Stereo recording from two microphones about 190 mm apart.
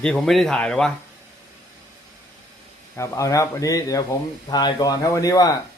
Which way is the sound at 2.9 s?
15° left (ahead or behind).